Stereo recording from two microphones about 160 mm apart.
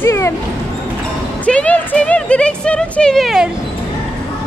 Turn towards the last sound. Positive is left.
turn(degrees=0)  # may be behind; listen again after turning